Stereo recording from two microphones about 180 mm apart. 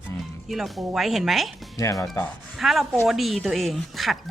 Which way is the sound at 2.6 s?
Centre (ahead or behind).